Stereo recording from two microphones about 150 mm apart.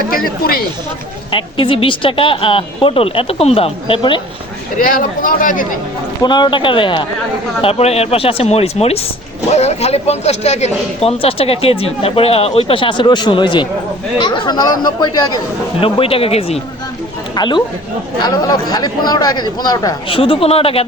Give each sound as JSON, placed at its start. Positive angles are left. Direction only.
{"t": 0.1, "sound": "speech", "side_deg": 75}
{"t": 1.3, "sound": "speech", "side_deg": 35}
{"t": 4.8, "sound": "speech", "side_deg": 65}
{"t": 6.2, "sound": "speech", "side_deg": 30}
{"t": 17.3, "sound": "speech", "side_deg": 30}
{"t": 20.1, "sound": "speech", "side_deg": 35}